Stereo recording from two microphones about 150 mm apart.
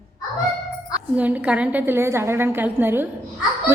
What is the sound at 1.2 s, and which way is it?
A woman's voice, 10° right (ahead or behind).